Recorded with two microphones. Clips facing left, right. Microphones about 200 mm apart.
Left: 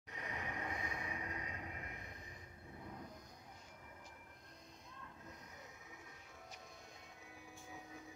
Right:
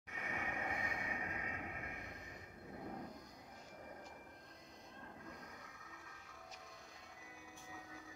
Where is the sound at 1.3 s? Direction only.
35° left (ahead or behind).